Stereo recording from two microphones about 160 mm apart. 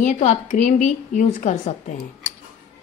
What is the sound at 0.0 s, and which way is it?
Speech, 45° left (ahead or behind).